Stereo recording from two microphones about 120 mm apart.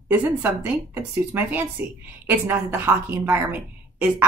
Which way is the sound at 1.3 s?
15° right (ahead or behind).